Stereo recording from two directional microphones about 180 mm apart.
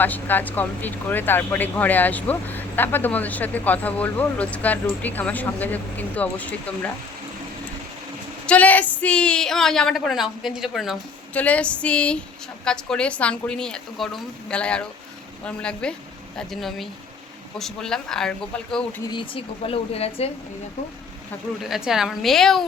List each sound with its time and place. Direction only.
0.0 s speech: 10° left (ahead or behind)
8.4 s a woman's voice: 10° left (ahead or behind)
19.0 s speech: 25° left (ahead or behind)
21.6 s a woman's voice: centre (ahead or behind)